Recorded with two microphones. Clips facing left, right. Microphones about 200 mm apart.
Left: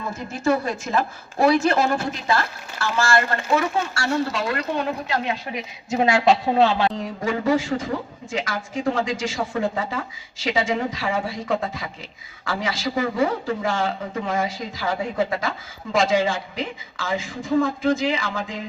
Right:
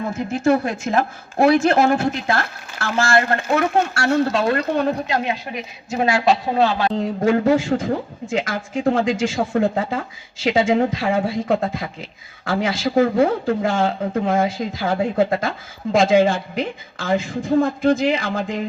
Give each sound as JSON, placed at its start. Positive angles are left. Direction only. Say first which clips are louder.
{"t": 0.4, "sound": "a woman's voice", "louder": "right 3 dB", "side_deg": -55}
{"t": 5.0, "sound": "speech", "louder": "right 3 dB", "side_deg": -15}
{"t": 5.5, "sound": "speech", "louder": "even", "side_deg": 20}
{"t": 6.9, "sound": "a woman's voice", "louder": "right 7 dB", "side_deg": -55}